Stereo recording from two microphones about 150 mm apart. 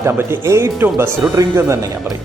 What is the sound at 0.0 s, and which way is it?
A man's voice, 15° right (ahead or behind).